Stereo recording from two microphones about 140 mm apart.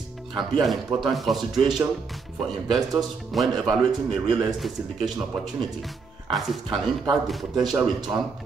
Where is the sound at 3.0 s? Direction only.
Centre (ahead or behind).